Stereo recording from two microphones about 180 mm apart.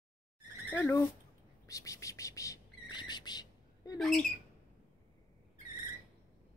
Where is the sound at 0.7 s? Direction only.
15° left (ahead or behind).